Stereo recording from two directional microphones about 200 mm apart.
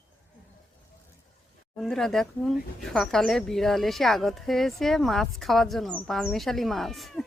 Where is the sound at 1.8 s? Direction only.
Centre (ahead or behind).